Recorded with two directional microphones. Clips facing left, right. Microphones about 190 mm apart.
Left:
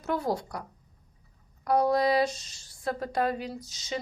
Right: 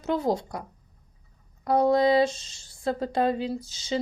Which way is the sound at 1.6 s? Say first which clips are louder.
Right 3 dB; 25° right (ahead or behind).